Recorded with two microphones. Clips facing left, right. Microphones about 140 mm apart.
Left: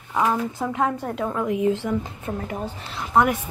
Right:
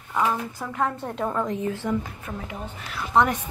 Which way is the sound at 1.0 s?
5° left (ahead or behind).